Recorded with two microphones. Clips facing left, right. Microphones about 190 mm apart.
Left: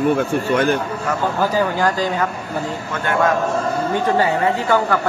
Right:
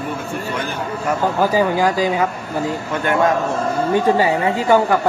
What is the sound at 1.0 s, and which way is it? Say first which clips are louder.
A man's voice: right 4 dB; 10° right (ahead or behind).